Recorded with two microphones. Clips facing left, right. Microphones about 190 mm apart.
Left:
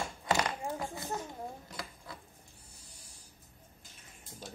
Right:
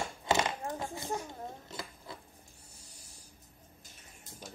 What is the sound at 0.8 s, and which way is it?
Speech, 20° right (ahead or behind).